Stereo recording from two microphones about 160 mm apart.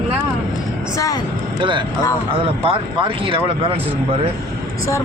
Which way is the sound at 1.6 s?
30° right (ahead or behind).